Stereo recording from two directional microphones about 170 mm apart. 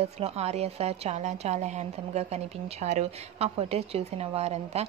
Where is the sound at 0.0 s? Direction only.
40° right (ahead or behind).